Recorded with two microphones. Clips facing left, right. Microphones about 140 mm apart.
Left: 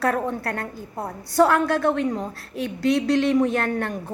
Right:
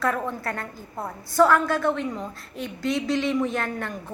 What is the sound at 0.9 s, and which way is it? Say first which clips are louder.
Speech: left 1 dB; 35° left (ahead or behind).